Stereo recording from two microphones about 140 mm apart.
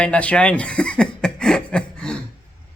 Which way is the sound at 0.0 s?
10° left (ahead or behind).